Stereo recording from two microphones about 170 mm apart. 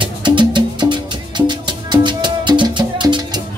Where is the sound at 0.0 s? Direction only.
30° right (ahead or behind).